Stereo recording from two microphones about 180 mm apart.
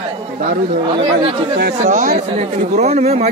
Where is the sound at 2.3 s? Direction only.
35° right (ahead or behind).